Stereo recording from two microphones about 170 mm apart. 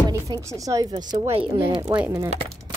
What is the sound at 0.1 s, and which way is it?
A woman's voice, 20° right (ahead or behind).